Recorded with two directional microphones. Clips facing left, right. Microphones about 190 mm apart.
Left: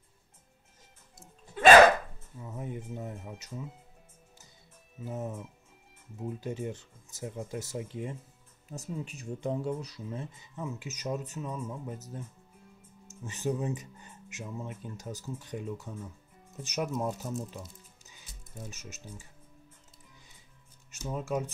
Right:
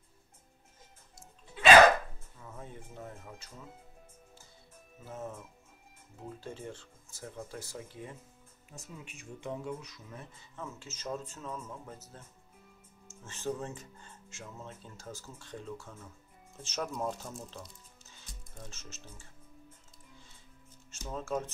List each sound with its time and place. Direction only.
1.6 s music: 45° left (ahead or behind)
2.4 s speech: 20° left (ahead or behind)
5.0 s speech: 15° left (ahead or behind)
8.6 s speech: 40° left (ahead or behind); by 12.0 s 15° left (ahead or behind)
13.2 s speech: 15° left (ahead or behind)
18.0 s music: 10° left (ahead or behind)
21.0 s speech: 15° left (ahead or behind)